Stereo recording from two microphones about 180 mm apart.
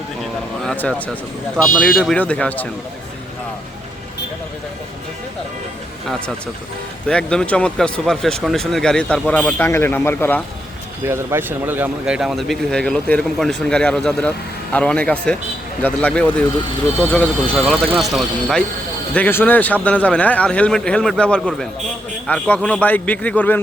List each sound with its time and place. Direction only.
0.6 s speech: 5° left (ahead or behind)
7.1 s speech: 5° left (ahead or behind)
11.0 s a man's voice: 15° right (ahead or behind)
19.1 s a man's voice: 10° left (ahead or behind)